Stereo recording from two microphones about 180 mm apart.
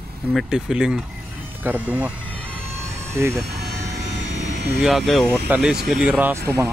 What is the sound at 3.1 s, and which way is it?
Speech, 15° right (ahead or behind).